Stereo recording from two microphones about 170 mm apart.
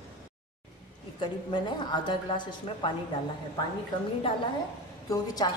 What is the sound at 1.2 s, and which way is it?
A woman's voice, 25° left (ahead or behind).